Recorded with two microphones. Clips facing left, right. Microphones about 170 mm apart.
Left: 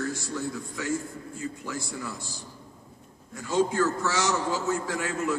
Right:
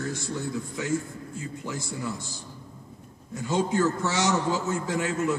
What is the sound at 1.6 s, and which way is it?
Speech, 20° right (ahead or behind).